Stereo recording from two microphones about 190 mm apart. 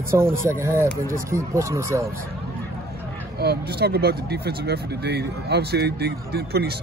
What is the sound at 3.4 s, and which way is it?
Speech, 55° right (ahead or behind).